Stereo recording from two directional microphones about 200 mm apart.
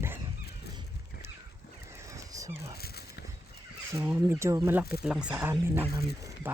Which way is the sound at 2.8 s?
50° left (ahead or behind).